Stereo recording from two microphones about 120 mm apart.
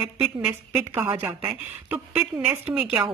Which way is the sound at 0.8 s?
20° right (ahead or behind).